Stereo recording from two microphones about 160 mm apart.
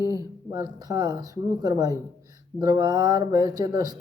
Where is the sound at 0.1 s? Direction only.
25° right (ahead or behind).